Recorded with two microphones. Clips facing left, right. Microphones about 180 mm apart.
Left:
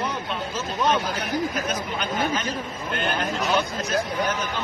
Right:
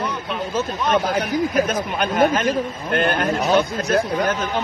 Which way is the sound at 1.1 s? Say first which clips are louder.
Right 7 dB; 55° right (ahead or behind).